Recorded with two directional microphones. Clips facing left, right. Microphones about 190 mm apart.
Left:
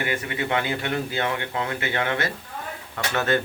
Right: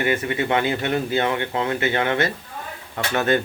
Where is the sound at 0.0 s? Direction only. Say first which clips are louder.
Right 5 dB; 25° right (ahead or behind).